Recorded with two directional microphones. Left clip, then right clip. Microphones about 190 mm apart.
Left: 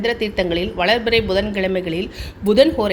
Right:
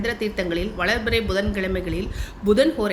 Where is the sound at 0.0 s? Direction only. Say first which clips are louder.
Left 5 dB; 15° left (ahead or behind).